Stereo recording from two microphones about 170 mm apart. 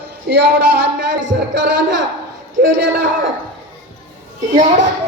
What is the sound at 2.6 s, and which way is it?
Speech, 65° right (ahead or behind).